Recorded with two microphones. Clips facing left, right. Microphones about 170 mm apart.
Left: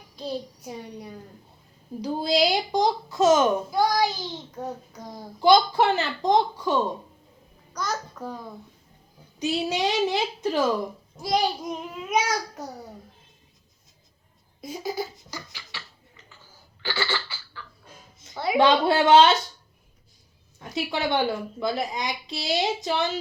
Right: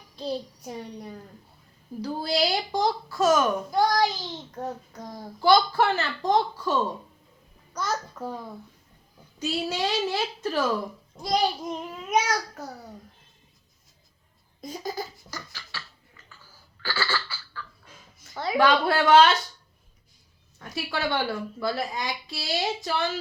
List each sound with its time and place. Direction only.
0.3 s a child's voice: 5° left (ahead or behind)
2.0 s speech: 15° left (ahead or behind)
3.7 s a child's voice: 5° left (ahead or behind)
5.4 s speech: 20° left (ahead or behind)
7.7 s a child's voice: centre (ahead or behind)
9.4 s speech: 15° left (ahead or behind)
11.2 s a child's voice: 5° left (ahead or behind)
14.6 s a sound: 5° left (ahead or behind)
18.2 s a woman's voice: 15° left (ahead or behind)
20.6 s a woman's voice: 20° left (ahead or behind)